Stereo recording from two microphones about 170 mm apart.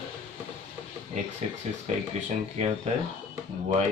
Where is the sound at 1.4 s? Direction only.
40° right (ahead or behind).